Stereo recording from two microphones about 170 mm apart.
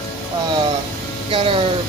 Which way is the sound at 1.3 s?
30° right (ahead or behind).